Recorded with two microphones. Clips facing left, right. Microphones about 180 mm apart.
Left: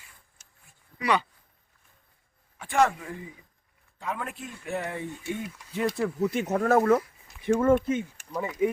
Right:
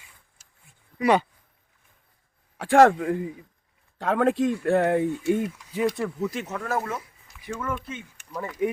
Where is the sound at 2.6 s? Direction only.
90° right; by 3.2 s 60° right (ahead or behind).